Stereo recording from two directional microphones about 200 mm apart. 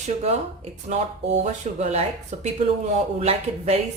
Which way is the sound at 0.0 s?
35° right (ahead or behind).